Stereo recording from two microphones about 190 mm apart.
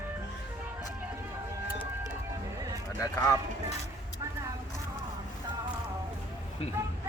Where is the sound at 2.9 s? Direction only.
15° left (ahead or behind).